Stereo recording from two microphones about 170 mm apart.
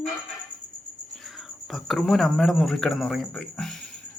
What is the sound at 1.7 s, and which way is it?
A man's voice, centre (ahead or behind).